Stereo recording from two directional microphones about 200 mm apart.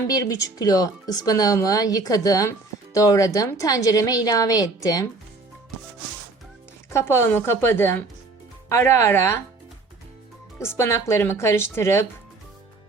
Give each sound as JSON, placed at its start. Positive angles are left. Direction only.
{"t": 0.1, "sound": "speech", "side_deg": 20}
{"t": 6.9, "sound": "speech", "side_deg": 15}
{"t": 10.6, "sound": "speech", "side_deg": 15}